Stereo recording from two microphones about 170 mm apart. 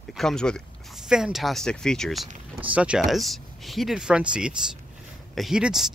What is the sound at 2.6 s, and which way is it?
Speech, 5° right (ahead or behind).